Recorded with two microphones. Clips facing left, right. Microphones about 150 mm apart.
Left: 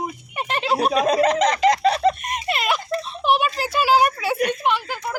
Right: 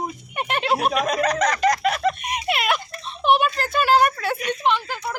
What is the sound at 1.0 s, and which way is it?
Speech, 30° left (ahead or behind).